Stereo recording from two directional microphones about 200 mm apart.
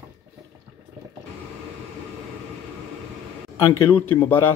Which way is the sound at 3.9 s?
10° left (ahead or behind).